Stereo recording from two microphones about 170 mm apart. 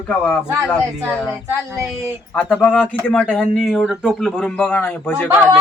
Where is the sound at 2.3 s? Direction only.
5° left (ahead or behind).